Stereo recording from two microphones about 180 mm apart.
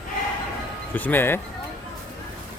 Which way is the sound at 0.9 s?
10° left (ahead or behind).